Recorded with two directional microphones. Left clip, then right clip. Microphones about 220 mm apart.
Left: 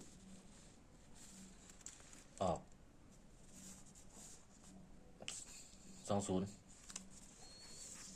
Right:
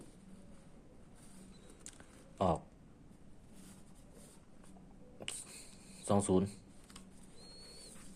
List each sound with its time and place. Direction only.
2.4 s speech: 15° right (ahead or behind)
5.2 s a sound: 15° right (ahead or behind)
6.1 s speech: 20° right (ahead or behind)